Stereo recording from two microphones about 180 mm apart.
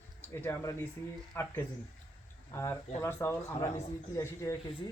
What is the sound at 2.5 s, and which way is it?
Speech, 15° left (ahead or behind).